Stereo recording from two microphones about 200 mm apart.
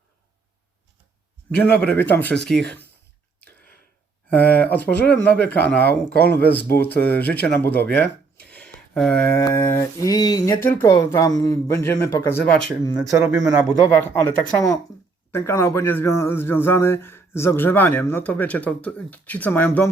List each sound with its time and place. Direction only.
1.5 s speech: 5° left (ahead or behind)
4.3 s speech: 10° left (ahead or behind)
13.2 s speech: 5° right (ahead or behind)
13.8 s speech: 15° left (ahead or behind)